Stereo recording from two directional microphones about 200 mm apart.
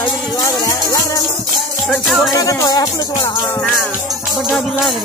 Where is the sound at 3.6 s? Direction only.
Centre (ahead or behind).